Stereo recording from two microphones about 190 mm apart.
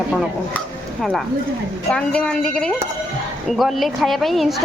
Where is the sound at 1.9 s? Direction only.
5° left (ahead or behind).